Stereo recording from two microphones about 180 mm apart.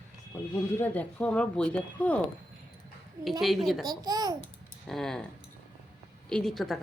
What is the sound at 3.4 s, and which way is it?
Speech, centre (ahead or behind).